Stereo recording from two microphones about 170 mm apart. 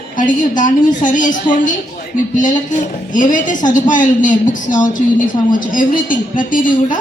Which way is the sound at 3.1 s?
50° left (ahead or behind).